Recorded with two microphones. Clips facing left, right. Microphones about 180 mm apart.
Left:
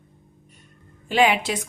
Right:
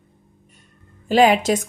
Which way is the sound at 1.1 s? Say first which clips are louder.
Right 5 dB; 40° right (ahead or behind).